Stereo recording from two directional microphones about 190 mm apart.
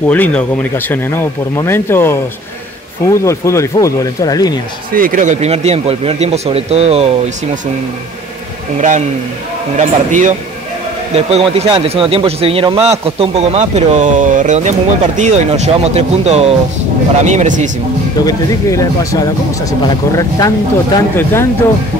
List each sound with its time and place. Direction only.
0.0 s speech: 10° left (ahead or behind)
3.3 s speech: 15° left (ahead or behind)
4.9 s speech: 45° right (ahead or behind)
9.8 s speech: 40° right (ahead or behind)
18.2 s speech: 20° left (ahead or behind)